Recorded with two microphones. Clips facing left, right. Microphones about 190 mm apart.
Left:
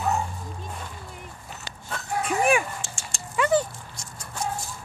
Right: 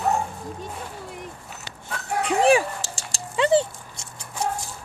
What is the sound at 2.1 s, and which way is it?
Dog, 75° right (ahead or behind).